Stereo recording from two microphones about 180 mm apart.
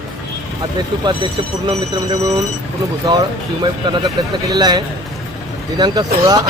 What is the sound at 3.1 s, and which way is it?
A man's voice, 25° right (ahead or behind).